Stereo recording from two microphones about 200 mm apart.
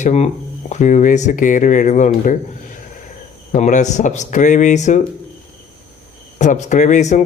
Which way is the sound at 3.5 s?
40° left (ahead or behind).